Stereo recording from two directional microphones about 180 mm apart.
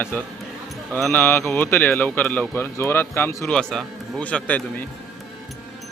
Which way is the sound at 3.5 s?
5° left (ahead or behind).